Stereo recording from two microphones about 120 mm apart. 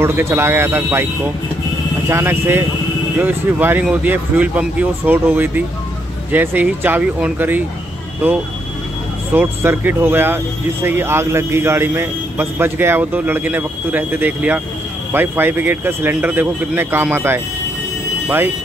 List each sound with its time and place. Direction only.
0.0 s speech: 20° right (ahead or behind)
9.3 s speech: 15° right (ahead or behind)